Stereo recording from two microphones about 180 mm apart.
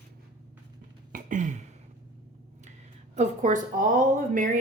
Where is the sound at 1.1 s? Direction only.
45° right (ahead or behind).